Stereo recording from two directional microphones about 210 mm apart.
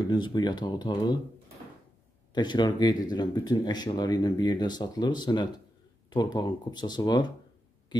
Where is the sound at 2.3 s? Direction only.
20° left (ahead or behind).